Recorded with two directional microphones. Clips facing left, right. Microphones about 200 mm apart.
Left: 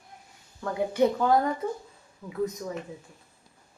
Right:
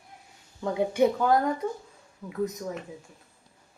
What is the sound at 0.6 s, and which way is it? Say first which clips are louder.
Speech: right 2 dB; 20° right (ahead or behind).